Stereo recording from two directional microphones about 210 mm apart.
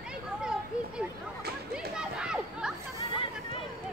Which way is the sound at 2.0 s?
5° right (ahead or behind).